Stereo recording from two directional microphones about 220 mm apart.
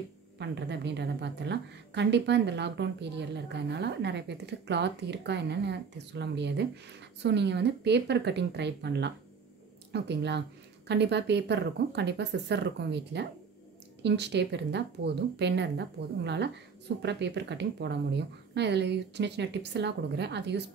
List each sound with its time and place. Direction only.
0.4 s a woman's voice: 50° right (ahead or behind)